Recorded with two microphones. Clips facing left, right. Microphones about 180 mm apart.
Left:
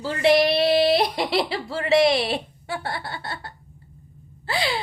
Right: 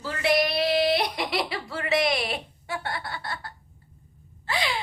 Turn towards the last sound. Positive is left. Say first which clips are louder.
# left 3 dB
turn(degrees=30)  # may be behind; listen again after turning